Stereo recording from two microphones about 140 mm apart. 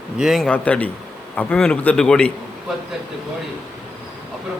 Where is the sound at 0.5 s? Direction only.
10° left (ahead or behind).